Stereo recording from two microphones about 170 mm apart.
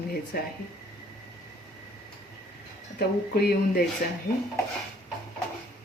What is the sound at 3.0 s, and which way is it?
Speech, 65° left (ahead or behind).